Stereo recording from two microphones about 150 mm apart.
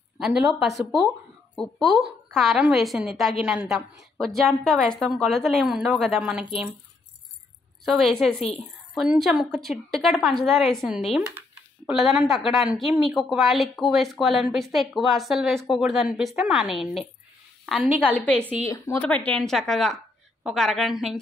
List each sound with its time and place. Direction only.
0.2 s a woman's voice: centre (ahead or behind)
7.8 s a woman's voice: centre (ahead or behind)
18.1 s a woman's voice: 10° left (ahead or behind)